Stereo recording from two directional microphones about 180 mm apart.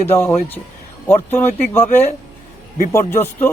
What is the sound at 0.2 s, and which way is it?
A man's voice, 15° left (ahead or behind).